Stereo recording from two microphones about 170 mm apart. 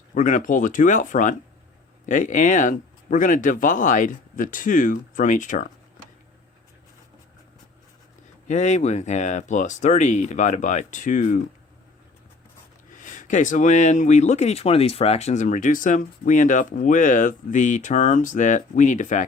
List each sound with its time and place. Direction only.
0.1 s speech: 50° left (ahead or behind)
8.4 s speech: 40° left (ahead or behind)
13.0 s speech: 50° left (ahead or behind)